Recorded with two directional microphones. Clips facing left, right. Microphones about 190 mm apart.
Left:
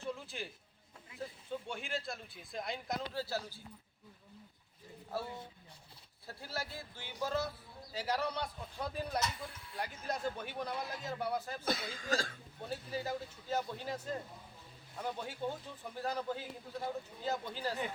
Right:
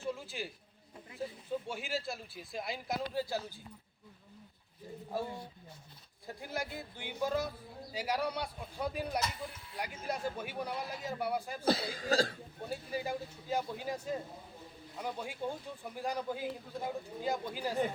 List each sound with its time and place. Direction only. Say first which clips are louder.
0.0 s a sound: right 3 dB; 5° right (ahead or behind)
1.6 s speech: right 3 dB; 5° right (ahead or behind)
3.1 s a man's voice: right 3 dB; 15° right (ahead or behind)
5.1 s a man's voice: right 2 dB; 15° right (ahead or behind)
11.6 s cough: right 6 dB; 35° right (ahead or behind)
12.6 s a man's voice: right 2 dB; 10° right (ahead or behind)